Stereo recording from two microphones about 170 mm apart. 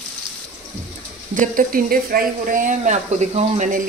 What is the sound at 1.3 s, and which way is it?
Speech, 55° right (ahead or behind).